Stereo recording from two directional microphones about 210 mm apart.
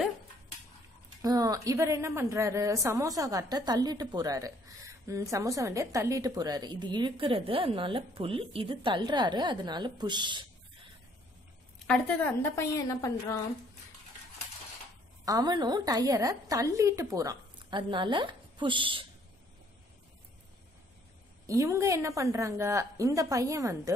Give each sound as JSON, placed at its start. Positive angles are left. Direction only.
{"t": 1.2, "sound": "a woman's voice", "side_deg": -20}
{"t": 11.9, "sound": "a woman's voice", "side_deg": 5}
{"t": 15.2, "sound": "a woman's voice", "side_deg": -20}
{"t": 21.5, "sound": "a woman's voice", "side_deg": -15}